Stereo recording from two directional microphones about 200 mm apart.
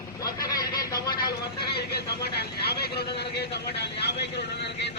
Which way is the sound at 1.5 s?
55° left (ahead or behind).